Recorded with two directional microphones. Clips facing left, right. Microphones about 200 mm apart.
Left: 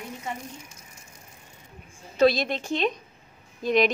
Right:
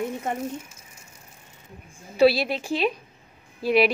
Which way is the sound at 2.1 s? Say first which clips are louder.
Right 2 dB; 10° right (ahead or behind).